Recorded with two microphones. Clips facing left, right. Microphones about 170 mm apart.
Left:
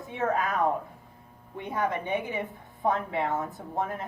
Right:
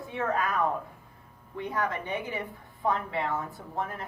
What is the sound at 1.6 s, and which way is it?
Speech, 20° left (ahead or behind).